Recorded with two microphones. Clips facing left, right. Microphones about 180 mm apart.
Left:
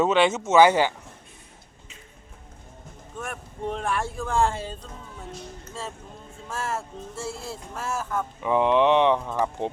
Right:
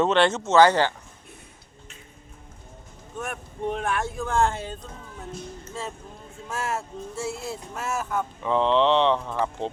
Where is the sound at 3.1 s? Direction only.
5° right (ahead or behind).